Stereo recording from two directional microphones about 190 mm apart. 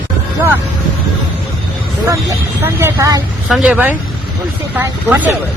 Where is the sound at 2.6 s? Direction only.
15° right (ahead or behind).